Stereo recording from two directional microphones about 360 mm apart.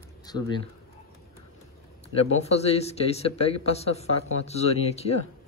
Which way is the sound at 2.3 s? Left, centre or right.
Centre.